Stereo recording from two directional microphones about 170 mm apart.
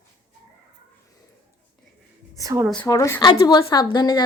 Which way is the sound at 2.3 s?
20° right (ahead or behind).